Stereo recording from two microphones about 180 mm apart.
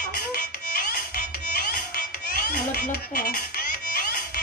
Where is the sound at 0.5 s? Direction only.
50° left (ahead or behind).